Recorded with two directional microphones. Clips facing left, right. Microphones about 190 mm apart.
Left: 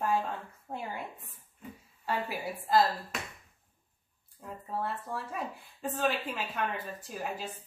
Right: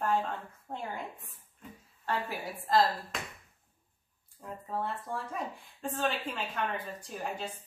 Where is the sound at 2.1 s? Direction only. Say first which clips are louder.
Left 1 dB; 10° left (ahead or behind).